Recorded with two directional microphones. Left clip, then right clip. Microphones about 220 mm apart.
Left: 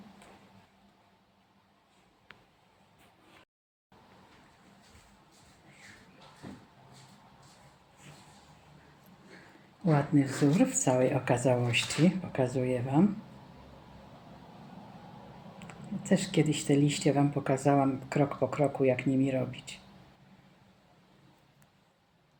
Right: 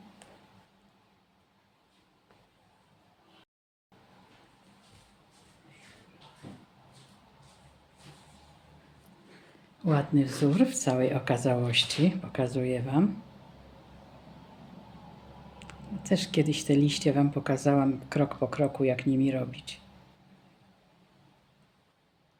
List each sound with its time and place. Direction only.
9.8 s speech: 10° right (ahead or behind)
15.6 s speech: 10° right (ahead or behind)
19.5 s speech: 50° right (ahead or behind)